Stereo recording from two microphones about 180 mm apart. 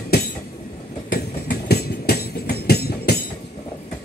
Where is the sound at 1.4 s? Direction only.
60° left (ahead or behind).